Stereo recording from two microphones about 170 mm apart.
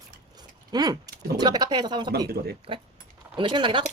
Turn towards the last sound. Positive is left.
turn(degrees=-30)  # may be behind; listen again after turning